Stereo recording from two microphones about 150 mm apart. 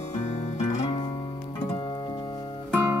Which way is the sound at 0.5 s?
50° left (ahead or behind).